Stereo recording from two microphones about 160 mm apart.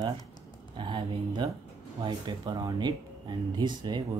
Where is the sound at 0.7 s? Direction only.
30° right (ahead or behind).